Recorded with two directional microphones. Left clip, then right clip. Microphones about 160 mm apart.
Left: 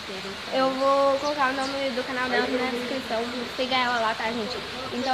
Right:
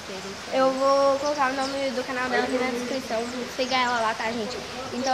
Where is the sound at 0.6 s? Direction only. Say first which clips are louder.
Right 2 dB; 10° right (ahead or behind).